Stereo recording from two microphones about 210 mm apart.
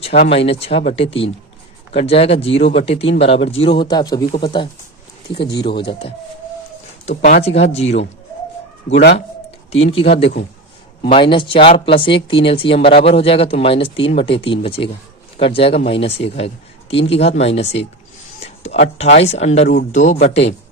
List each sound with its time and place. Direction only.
0.3 s speech: 30° left (ahead or behind)
7.0 s speech: 35° left (ahead or behind)
8.9 s speech: 55° left (ahead or behind)
11.0 s speech: 25° left (ahead or behind)
18.4 s a sound: 30° left (ahead or behind)
18.9 s speech: 30° left (ahead or behind)